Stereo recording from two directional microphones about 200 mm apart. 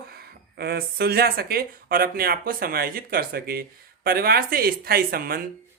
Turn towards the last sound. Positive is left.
turn(degrees=-50)  # may be behind; listen again after turning